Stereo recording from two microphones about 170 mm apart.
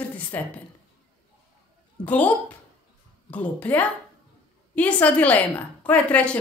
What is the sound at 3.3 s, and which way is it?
A woman's voice, 10° left (ahead or behind).